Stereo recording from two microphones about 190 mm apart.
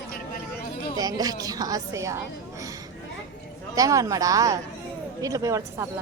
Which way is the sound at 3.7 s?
15° right (ahead or behind).